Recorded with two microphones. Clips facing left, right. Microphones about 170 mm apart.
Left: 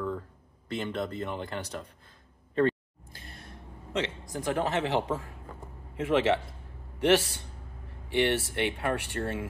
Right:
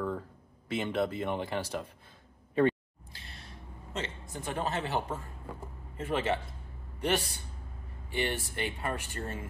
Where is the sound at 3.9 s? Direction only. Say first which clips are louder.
Left 6 dB; 85° left.